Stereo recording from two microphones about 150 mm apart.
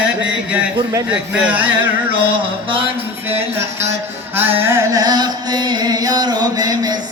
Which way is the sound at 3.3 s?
15° right (ahead or behind).